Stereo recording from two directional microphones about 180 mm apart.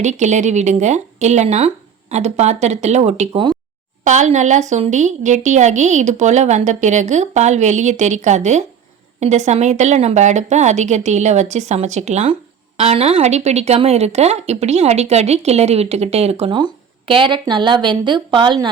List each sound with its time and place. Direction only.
0.0 s a woman's voice: 40° right (ahead or behind); by 18.7 s 25° right (ahead or behind)